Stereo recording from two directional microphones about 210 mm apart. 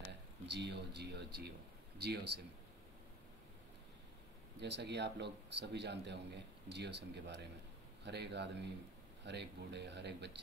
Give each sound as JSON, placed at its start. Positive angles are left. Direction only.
{"t": 0.5, "sound": "speech", "side_deg": -55}
{"t": 4.6, "sound": "speech", "side_deg": -55}